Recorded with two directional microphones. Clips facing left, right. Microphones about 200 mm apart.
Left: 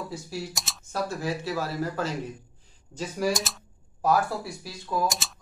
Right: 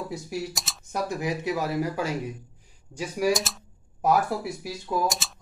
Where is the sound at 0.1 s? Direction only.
20° right (ahead or behind).